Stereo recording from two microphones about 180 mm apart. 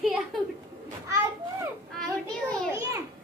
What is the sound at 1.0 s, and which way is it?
Children playing, 15° right (ahead or behind).